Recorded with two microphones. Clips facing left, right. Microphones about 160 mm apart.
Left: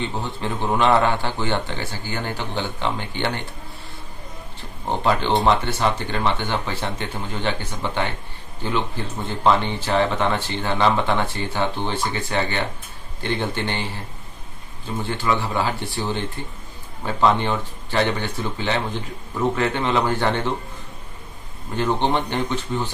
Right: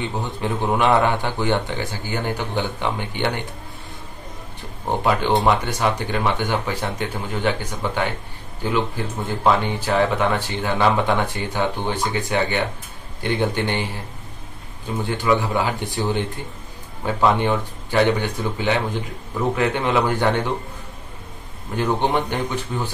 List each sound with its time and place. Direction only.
0.2 s speech: 15° right (ahead or behind)
4.8 s speech: 10° right (ahead or behind)
15.0 s speech: 15° right (ahead or behind)
21.7 s speech: 10° right (ahead or behind)